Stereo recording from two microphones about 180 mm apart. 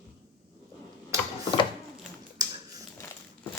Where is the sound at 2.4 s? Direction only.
20° right (ahead or behind).